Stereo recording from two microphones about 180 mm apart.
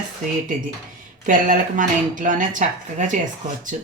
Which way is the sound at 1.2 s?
45° right (ahead or behind).